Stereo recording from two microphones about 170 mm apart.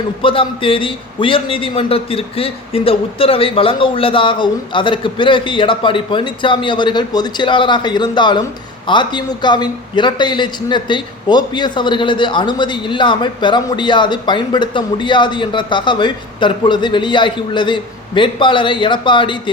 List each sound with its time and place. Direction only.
0.2 s a man's voice: 30° left (ahead or behind)